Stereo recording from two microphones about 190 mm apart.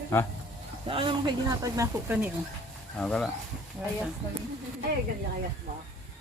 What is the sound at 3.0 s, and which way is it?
Speech, 5° left (ahead or behind).